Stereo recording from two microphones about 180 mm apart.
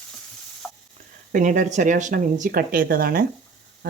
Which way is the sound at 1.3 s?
45° right (ahead or behind).